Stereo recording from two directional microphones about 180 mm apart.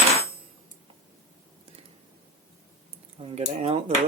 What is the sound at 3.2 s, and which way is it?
Speech, 35° right (ahead or behind).